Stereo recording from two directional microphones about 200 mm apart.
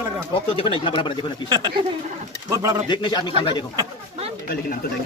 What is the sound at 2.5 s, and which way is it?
Speech, 15° right (ahead or behind).